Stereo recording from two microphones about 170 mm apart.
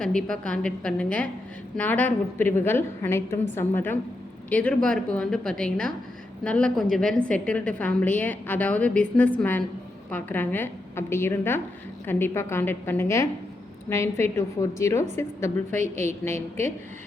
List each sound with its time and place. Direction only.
0.0 s a woman's voice: 5° left (ahead or behind)
15.7 s a woman's voice: 45° right (ahead or behind)
16.0 s a woman's voice: 15° left (ahead or behind)